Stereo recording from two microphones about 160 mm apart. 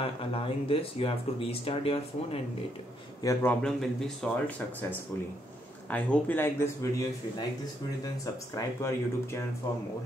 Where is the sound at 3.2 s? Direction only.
10° left (ahead or behind).